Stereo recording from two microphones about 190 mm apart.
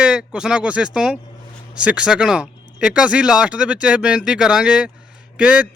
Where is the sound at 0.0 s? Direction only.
5° right (ahead or behind).